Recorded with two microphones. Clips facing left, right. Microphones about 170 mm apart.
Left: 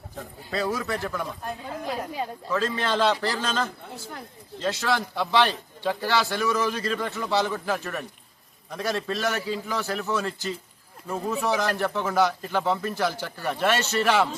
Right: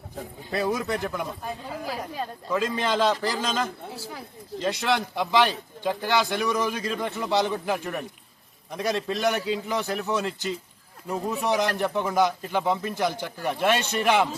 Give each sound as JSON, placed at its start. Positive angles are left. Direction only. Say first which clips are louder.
{"t": 0.5, "sound": "a man's voice", "louder": "right 1 dB", "side_deg": -20}
{"t": 1.5, "sound": "a man's voice", "louder": "left 1 dB", "side_deg": -5}